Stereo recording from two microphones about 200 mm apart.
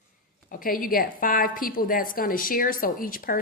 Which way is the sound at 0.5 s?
45° left (ahead or behind).